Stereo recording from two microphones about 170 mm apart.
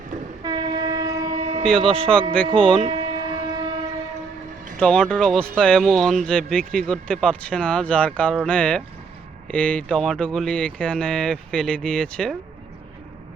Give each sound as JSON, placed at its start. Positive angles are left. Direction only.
{"t": 0.4, "sound": "train", "side_deg": -25}
{"t": 1.6, "sound": "speech", "side_deg": 5}
{"t": 2.8, "sound": "train", "side_deg": -30}
{"t": 4.8, "sound": "speech", "side_deg": 5}